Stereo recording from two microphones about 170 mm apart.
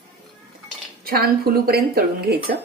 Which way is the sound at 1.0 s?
65° right (ahead or behind).